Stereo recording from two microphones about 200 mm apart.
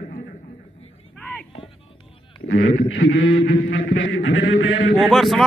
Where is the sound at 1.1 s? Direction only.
5° left (ahead or behind).